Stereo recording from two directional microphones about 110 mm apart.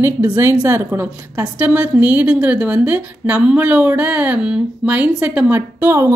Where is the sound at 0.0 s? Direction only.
25° right (ahead or behind).